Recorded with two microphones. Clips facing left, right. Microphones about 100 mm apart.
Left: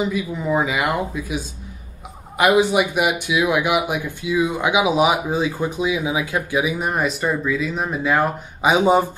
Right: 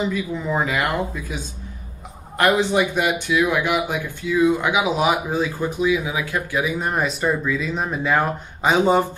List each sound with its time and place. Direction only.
0.1 s speech: 10° left (ahead or behind)